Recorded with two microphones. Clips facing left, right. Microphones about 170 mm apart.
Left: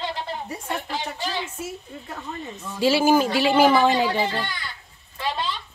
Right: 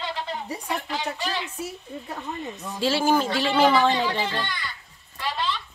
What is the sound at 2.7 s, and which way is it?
A man's voice, 5° left (ahead or behind).